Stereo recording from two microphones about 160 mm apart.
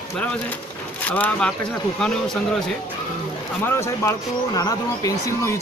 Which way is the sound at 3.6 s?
15° left (ahead or behind).